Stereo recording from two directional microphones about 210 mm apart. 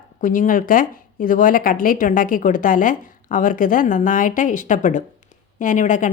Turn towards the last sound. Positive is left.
turn(degrees=35)  # may be behind; listen again after turning